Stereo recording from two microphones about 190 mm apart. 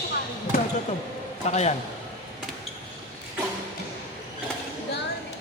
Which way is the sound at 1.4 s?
35° left (ahead or behind).